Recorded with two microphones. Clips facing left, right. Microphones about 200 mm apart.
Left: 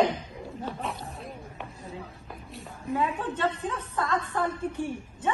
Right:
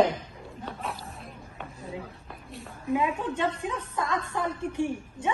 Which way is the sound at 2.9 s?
15° right (ahead or behind).